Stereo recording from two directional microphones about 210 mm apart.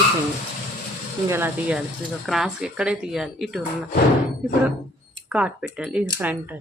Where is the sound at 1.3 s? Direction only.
10° right (ahead or behind).